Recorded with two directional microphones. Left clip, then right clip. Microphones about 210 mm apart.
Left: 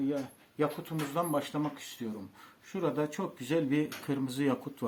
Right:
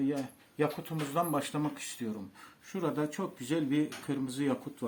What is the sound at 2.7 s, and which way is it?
Speech, centre (ahead or behind).